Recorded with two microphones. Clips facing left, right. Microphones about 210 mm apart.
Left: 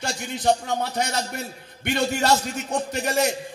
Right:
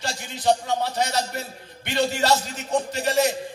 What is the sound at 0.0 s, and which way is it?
Music, 55° left (ahead or behind).